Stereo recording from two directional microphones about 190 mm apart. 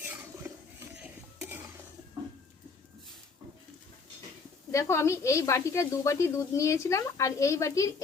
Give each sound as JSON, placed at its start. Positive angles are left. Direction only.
{"t": 0.0, "sound": "a sound", "side_deg": -10}
{"t": 0.9, "sound": "stir", "side_deg": -5}
{"t": 4.7, "sound": "a woman's voice", "side_deg": 15}